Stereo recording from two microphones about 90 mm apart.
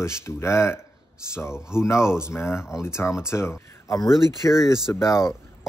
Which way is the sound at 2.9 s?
30° left (ahead or behind).